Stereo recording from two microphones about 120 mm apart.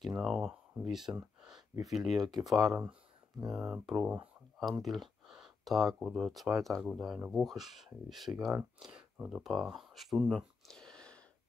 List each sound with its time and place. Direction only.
0.2 s speech: 5° right (ahead or behind)